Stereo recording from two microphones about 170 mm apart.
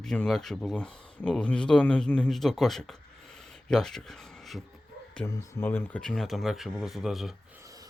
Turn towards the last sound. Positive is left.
turn(degrees=0)  # may be behind; listen again after turning